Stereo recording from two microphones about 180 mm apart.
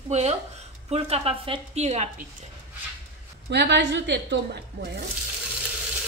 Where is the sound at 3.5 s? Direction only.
70° right (ahead or behind).